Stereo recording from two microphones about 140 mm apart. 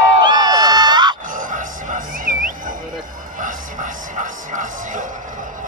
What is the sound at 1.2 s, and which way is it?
Wild animals, 75° right (ahead or behind).